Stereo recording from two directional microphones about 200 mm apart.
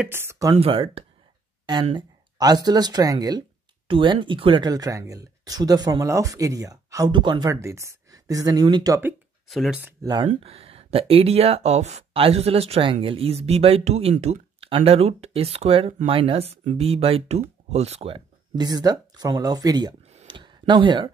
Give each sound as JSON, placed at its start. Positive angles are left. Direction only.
{"t": 0.0, "sound": "speech", "side_deg": -10}
{"t": 0.6, "sound": "speech", "side_deg": -30}
{"t": 9.5, "sound": "speech", "side_deg": 0}
{"t": 10.2, "sound": "speech", "side_deg": -30}
{"t": 20.1, "sound": "a sound", "side_deg": -30}